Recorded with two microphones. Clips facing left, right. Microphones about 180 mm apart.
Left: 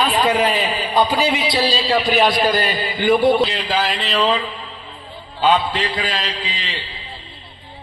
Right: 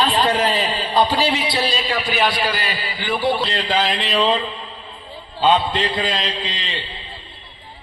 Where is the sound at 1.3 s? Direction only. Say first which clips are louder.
Left 2 dB; 20° left (ahead or behind).